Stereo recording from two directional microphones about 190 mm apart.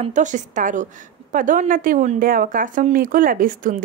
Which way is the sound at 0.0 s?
40° right (ahead or behind).